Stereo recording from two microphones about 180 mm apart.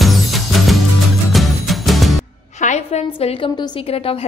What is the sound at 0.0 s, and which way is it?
Music, centre (ahead or behind).